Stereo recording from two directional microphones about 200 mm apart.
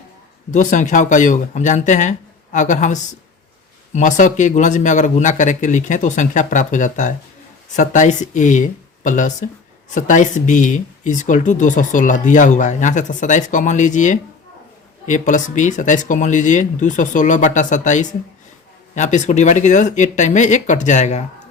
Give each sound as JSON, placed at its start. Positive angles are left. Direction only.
{"t": 0.5, "sound": "speech", "side_deg": 40}